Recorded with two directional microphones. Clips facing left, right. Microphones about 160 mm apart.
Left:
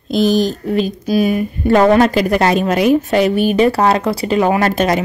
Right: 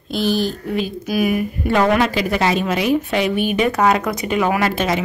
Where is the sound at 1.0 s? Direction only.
30° left (ahead or behind).